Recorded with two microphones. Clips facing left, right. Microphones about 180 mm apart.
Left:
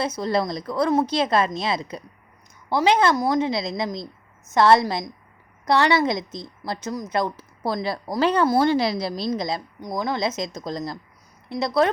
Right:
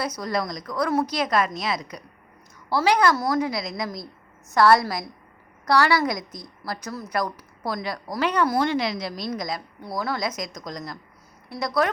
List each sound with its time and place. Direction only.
0.0 s a woman's voice: 25° left (ahead or behind)